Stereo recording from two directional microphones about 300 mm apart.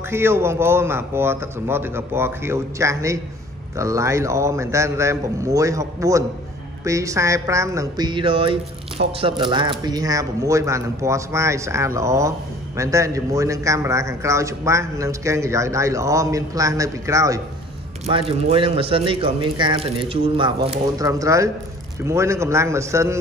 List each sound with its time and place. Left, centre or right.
0.1 s a woman's voice: centre